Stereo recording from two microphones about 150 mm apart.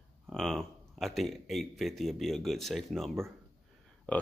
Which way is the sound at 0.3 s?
5° left (ahead or behind).